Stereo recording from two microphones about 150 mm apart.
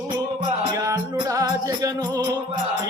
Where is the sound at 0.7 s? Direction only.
20° right (ahead or behind).